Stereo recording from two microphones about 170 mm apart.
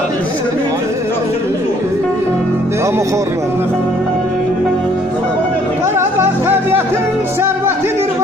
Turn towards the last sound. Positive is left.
turn(degrees=-15)  # may be behind; listen again after turning